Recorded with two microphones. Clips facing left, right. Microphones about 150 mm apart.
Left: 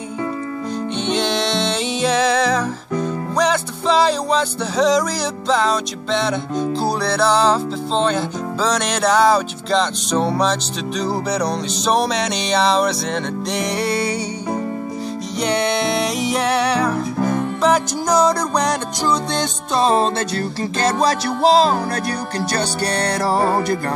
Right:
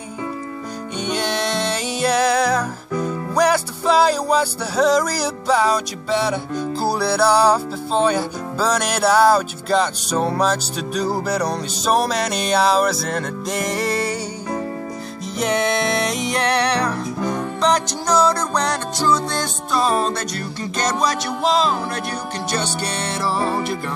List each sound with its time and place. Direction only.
1.0 s music: 5° right (ahead or behind)
15.4 s music: centre (ahead or behind); by 21.7 s 35° left (ahead or behind)
22.5 s speech: 35° left (ahead or behind)